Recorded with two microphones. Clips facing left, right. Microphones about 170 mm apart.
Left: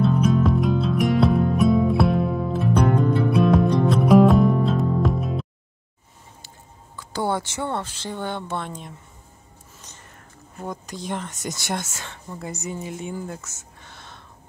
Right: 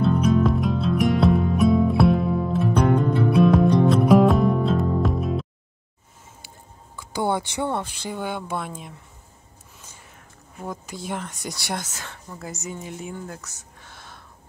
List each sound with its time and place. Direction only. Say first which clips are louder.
0.0 s music: even; centre (ahead or behind)
7.0 s speech: right 1 dB; 15° right (ahead or behind)
9.8 s a sound: even; 5° right (ahead or behind)
12.0 s a woman's voice: left 2 dB; centre (ahead or behind)